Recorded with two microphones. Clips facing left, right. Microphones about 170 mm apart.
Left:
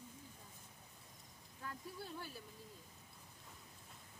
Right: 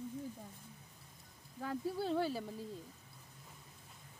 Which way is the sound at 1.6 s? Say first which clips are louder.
Right 12 dB; 80° right.